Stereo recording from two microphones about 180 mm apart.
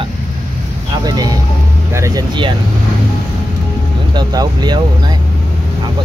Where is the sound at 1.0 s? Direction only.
20° right (ahead or behind).